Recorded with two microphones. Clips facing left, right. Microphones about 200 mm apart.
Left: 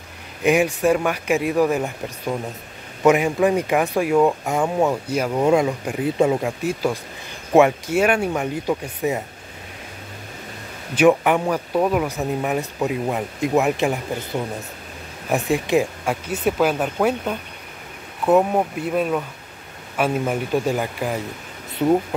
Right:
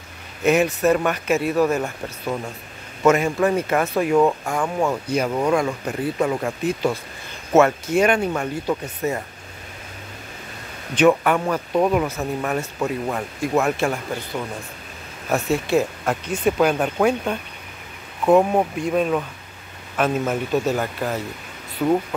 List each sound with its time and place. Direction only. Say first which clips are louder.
0.4 s a man's voice: even; 15° left (ahead or behind)
4.6 s speech: left 3 dB; 20° left (ahead or behind)
5.1 s speech: even; 5° left (ahead or behind)
5.4 s speech: left 3 dB; 20° left (ahead or behind)
6.4 s speech: even; 5° left (ahead or behind)
11.0 s speech: left 1 dB; 15° left (ahead or behind)
12.1 s speech: left 2 dB; 15° left (ahead or behind)